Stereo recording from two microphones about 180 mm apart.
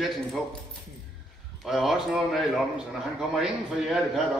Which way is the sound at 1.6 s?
Centre (ahead or behind).